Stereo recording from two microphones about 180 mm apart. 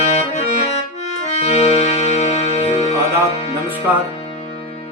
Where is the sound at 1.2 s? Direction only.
35° left (ahead or behind).